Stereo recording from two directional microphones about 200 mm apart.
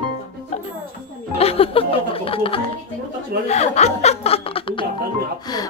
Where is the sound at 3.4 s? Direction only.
35° left (ahead or behind).